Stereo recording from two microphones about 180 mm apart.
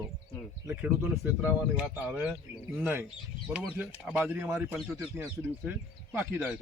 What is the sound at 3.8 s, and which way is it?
Speech, centre (ahead or behind).